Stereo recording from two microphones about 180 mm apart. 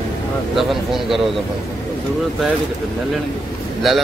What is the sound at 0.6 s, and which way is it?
Speech, centre (ahead or behind).